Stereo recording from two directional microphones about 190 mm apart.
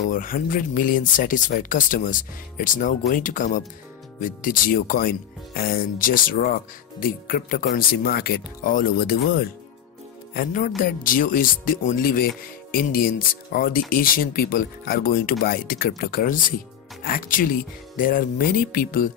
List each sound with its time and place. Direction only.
0.1 s speech: 45° left (ahead or behind)
10.3 s speech: 45° left (ahead or behind)